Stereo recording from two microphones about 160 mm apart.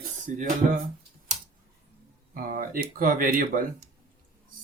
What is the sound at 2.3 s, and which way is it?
Speech, 60° right (ahead or behind).